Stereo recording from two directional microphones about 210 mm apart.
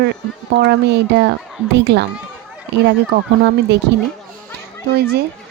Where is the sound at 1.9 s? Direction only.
55° right (ahead or behind).